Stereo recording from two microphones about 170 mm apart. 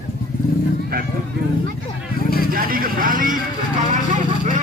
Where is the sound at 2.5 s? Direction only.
55° right (ahead or behind).